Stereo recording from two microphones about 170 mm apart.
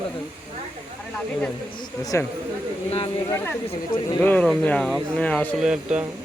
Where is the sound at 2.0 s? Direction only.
20° left (ahead or behind).